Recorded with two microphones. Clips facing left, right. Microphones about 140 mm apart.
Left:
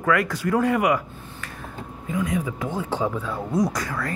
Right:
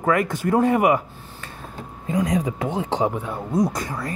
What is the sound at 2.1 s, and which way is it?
Speech, 40° right (ahead or behind).